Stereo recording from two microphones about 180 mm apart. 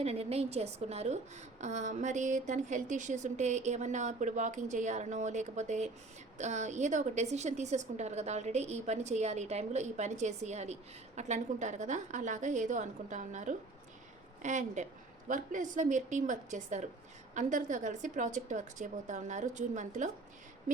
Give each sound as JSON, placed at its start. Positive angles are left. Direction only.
{"t": 0.0, "sound": "a woman's voice", "side_deg": -35}